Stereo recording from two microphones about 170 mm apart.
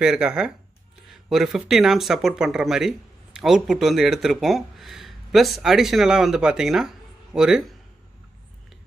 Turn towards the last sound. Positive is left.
turn(degrees=-5)  # may be behind; listen again after turning